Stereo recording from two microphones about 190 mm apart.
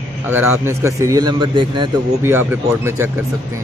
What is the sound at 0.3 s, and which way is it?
Speech, 10° right (ahead or behind).